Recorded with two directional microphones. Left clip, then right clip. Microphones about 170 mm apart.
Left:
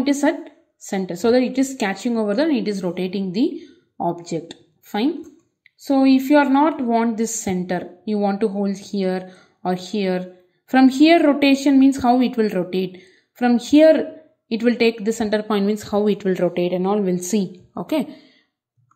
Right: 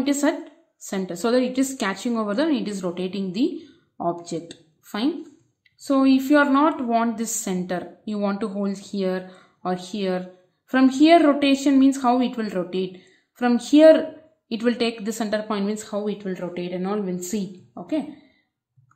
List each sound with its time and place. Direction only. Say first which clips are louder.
0.0 s a woman's voice: left 3 dB; 20° left (ahead or behind)
16.0 s a woman's voice: left 13 dB; 45° left (ahead or behind)